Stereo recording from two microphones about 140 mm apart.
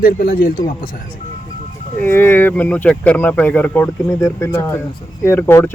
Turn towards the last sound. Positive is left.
turn(degrees=15)  # may be behind; listen again after turning